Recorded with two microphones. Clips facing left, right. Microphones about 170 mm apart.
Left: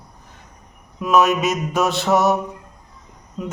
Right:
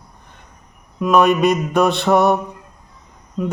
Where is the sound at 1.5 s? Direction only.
60° right (ahead or behind).